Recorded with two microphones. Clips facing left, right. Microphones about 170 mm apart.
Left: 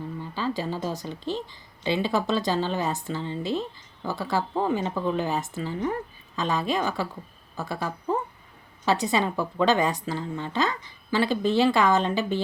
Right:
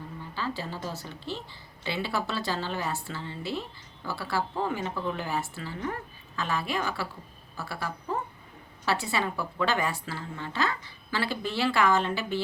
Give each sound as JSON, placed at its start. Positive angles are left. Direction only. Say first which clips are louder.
{"t": 0.3, "sound": "a woman's voice", "louder": "left 5 dB", "side_deg": 15}